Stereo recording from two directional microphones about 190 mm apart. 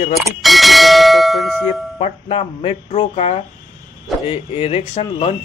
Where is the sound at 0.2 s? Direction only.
Centre (ahead or behind).